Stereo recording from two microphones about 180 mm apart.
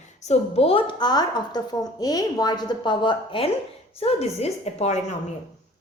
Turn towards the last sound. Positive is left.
turn(degrees=35)  # may be behind; listen again after turning